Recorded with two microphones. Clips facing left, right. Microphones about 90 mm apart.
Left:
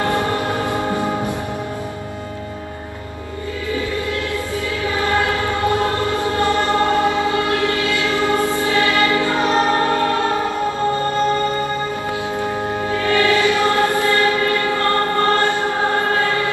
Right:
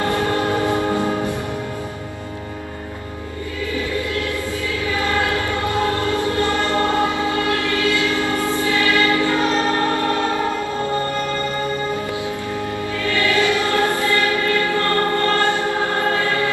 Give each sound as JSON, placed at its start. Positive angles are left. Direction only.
{"t": 0.7, "sound": "music", "side_deg": 20}
{"t": 6.1, "sound": "choir", "side_deg": 20}
{"t": 13.1, "sound": "music", "side_deg": 20}
{"t": 13.9, "sound": "choir", "side_deg": 20}